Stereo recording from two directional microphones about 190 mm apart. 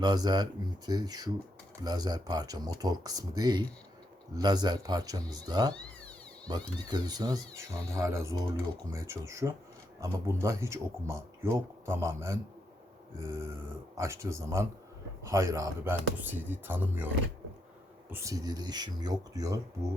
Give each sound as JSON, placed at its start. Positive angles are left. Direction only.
{"t": 0.0, "sound": "speech", "side_deg": -20}
{"t": 5.7, "sound": "a sound", "side_deg": 5}
{"t": 6.5, "sound": "speech", "side_deg": -20}
{"t": 18.1, "sound": "speech", "side_deg": -15}